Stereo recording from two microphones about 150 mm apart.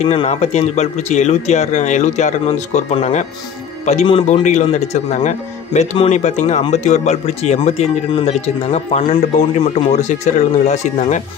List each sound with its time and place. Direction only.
0.0 s speech: 40° left (ahead or behind)